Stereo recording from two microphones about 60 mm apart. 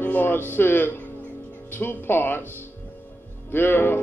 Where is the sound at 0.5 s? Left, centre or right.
Left.